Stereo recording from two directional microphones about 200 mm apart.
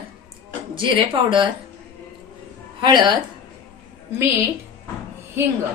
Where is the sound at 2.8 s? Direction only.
20° right (ahead or behind).